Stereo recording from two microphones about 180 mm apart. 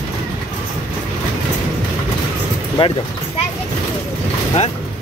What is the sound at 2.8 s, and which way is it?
Speech, 30° left (ahead or behind).